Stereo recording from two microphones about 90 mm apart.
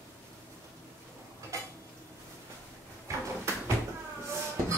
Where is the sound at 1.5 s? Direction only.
35° right (ahead or behind).